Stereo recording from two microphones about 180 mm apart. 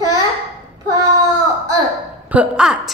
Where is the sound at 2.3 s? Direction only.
5° right (ahead or behind).